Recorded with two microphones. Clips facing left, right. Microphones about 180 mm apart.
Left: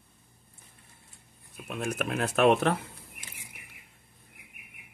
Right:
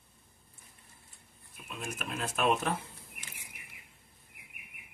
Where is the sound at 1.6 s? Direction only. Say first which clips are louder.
Left 8 dB; 65° left (ahead or behind).